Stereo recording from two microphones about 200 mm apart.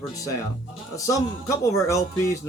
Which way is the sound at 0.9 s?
15° left (ahead or behind).